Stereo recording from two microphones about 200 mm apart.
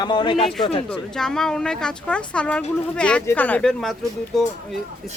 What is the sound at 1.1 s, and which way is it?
Speech, 5° left (ahead or behind).